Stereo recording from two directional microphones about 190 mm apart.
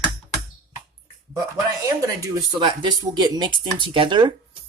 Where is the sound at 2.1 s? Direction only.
25° right (ahead or behind).